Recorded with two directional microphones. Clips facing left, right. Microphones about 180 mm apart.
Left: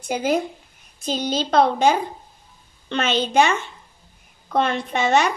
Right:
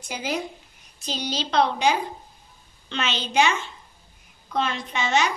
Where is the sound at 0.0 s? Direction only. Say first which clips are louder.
Left 8 dB; 55° left (ahead or behind).